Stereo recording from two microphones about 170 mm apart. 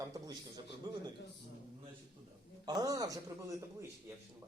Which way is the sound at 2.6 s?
20° right (ahead or behind).